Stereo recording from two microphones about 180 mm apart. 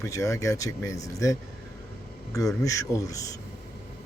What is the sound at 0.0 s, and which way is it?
A man's voice, 15° left (ahead or behind).